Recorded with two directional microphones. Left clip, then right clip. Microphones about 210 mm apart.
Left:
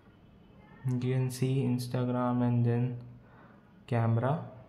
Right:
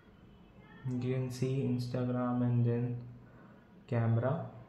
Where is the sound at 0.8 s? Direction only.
20° left (ahead or behind).